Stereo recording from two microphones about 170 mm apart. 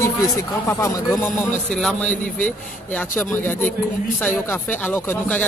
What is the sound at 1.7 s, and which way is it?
Speech, centre (ahead or behind).